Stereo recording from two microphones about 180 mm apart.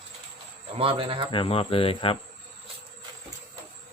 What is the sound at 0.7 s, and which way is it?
Speech, 30° right (ahead or behind).